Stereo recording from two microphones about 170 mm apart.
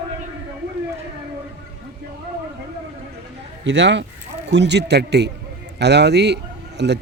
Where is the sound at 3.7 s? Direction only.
90° right.